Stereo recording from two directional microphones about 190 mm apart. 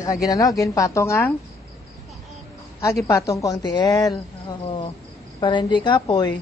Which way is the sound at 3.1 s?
15° left (ahead or behind).